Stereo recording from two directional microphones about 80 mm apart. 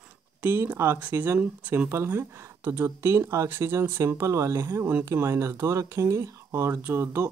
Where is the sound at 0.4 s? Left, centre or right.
Right.